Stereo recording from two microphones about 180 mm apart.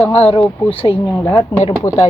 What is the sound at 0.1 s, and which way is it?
Speech, 35° left (ahead or behind).